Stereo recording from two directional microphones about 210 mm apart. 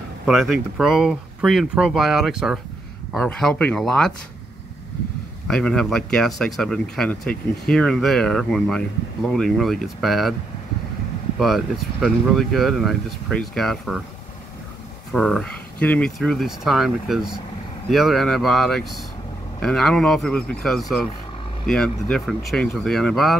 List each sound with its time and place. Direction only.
0.3 s speech: centre (ahead or behind)
5.5 s speech: 5° left (ahead or behind)
11.3 s speech: centre (ahead or behind)
15.1 s speech: centre (ahead or behind)